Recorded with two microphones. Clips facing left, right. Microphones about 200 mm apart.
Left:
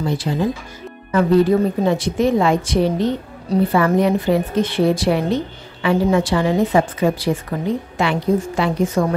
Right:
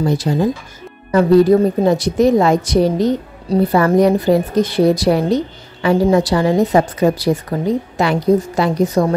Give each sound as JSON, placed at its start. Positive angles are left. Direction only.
{"t": 0.0, "sound": "a woman's voice", "side_deg": -40}